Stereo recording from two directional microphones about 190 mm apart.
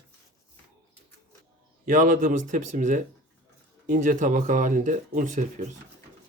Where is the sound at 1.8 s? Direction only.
45° right (ahead or behind).